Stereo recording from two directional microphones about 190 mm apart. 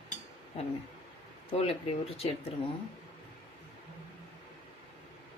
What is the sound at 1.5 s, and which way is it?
Speech, 30° left (ahead or behind).